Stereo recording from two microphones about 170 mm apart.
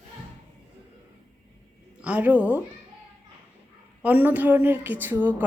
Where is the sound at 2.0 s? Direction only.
10° right (ahead or behind).